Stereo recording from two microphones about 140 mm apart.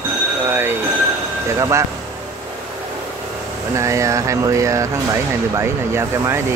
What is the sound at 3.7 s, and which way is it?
Speech, 20° right (ahead or behind).